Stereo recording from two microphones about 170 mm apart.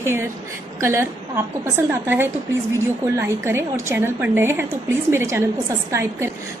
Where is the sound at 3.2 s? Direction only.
15° right (ahead or behind).